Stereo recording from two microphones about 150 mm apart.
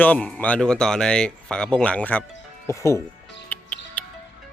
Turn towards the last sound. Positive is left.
turn(degrees=10)  # may be behind; listen again after turning